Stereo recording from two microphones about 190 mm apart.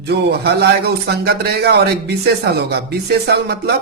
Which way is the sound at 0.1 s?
60° right (ahead or behind).